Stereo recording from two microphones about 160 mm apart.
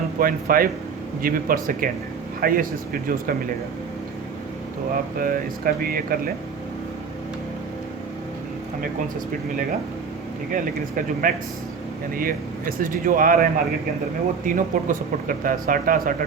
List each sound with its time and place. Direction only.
0.2 s speech: 65° right (ahead or behind)
5.2 s speech: 65° right (ahead or behind)
10.5 s speech: 60° right (ahead or behind)